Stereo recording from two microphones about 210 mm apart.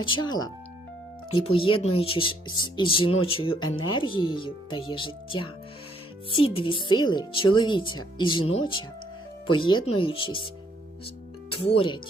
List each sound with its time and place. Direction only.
0.0 s speech: 20° left (ahead or behind)
3.5 s speech: 75° left (ahead or behind)
3.9 s speech: 25° left (ahead or behind)
9.5 s speech: 20° left (ahead or behind)
11.5 s speech: 25° left (ahead or behind)